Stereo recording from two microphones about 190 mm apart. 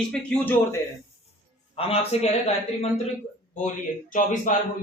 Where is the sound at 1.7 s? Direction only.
30° left (ahead or behind).